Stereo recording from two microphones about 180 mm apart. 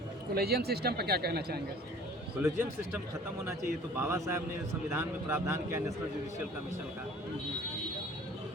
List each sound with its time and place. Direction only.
0.3 s speech: 60° right (ahead or behind)
2.4 s speech: 15° right (ahead or behind)